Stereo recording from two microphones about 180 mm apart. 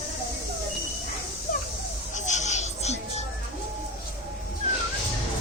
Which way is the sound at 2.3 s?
40° left (ahead or behind).